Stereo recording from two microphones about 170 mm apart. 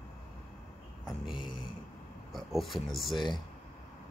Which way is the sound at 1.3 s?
30° left (ahead or behind).